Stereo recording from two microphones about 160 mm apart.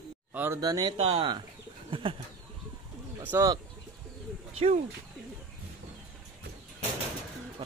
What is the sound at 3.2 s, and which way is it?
Speech, 15° right (ahead or behind).